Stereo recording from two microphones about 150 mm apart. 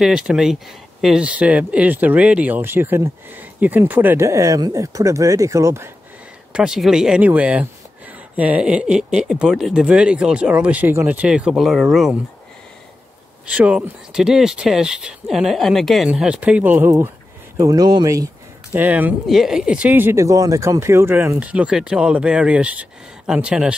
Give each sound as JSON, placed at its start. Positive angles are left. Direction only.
{"t": 0.0, "sound": "speech", "side_deg": -5}
{"t": 6.5, "sound": "speech", "side_deg": -5}
{"t": 13.5, "sound": "speech", "side_deg": -10}